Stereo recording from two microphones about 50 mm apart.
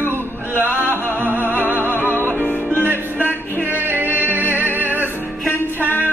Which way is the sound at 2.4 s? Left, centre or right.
Left.